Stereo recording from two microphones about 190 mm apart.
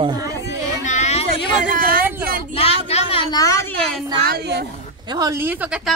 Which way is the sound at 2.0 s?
10° right (ahead or behind).